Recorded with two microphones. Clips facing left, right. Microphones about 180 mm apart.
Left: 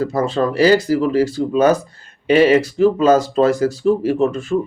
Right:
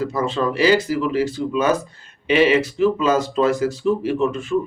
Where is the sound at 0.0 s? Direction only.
40° left (ahead or behind).